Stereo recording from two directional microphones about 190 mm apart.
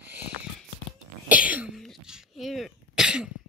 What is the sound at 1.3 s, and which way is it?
Cough, 5° right (ahead or behind).